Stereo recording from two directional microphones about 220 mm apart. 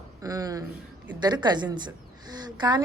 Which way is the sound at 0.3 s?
15° right (ahead or behind).